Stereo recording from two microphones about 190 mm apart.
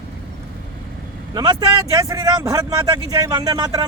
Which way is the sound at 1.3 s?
20° right (ahead or behind).